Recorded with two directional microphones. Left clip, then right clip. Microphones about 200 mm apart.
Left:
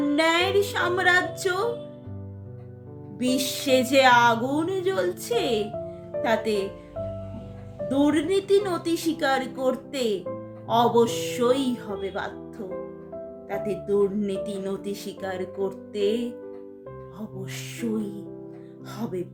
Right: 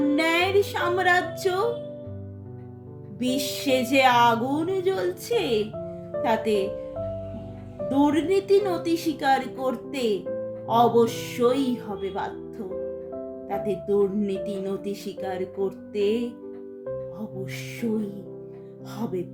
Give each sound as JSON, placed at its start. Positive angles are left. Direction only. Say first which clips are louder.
{"t": 0.2, "sound": "music", "louder": "left 2 dB", "side_deg": 20}
{"t": 3.2, "sound": "speech", "louder": "left 1 dB", "side_deg": 20}
{"t": 7.9, "sound": "speech", "louder": "right 1 dB", "side_deg": 20}
{"t": 13.5, "sound": "speech", "louder": "right 1 dB", "side_deg": 15}